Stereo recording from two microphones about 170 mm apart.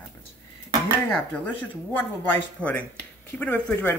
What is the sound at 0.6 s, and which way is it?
Dishes, 25° right (ahead or behind).